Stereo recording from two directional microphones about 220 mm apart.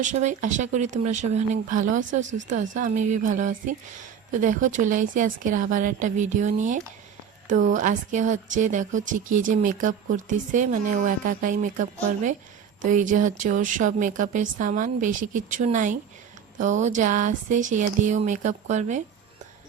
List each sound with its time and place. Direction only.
0.0 s speech: 35° right (ahead or behind)